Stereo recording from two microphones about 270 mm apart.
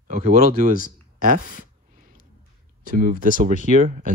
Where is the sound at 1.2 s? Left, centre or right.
Right.